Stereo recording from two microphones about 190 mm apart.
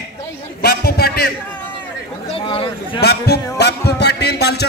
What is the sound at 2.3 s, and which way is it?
Speech, 30° left (ahead or behind).